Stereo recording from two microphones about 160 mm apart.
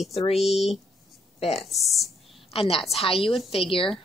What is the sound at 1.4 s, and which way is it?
Speech, 40° left (ahead or behind).